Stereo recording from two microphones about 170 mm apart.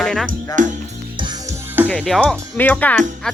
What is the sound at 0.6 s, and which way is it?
Speech, 50° right (ahead or behind).